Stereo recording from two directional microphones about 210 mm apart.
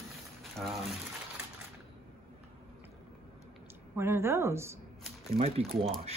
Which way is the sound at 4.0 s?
10° right (ahead or behind).